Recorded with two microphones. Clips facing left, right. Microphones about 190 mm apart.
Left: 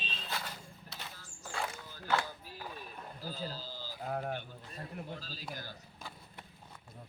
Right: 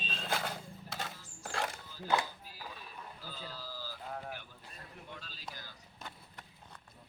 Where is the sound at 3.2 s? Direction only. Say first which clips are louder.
Left 7 dB; 40° left (ahead or behind); by 3.9 s 25° left (ahead or behind).